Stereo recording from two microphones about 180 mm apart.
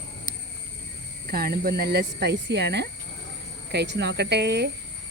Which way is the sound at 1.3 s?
55° right (ahead or behind).